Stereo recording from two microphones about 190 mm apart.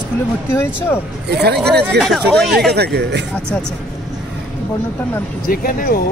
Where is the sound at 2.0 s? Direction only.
Centre (ahead or behind).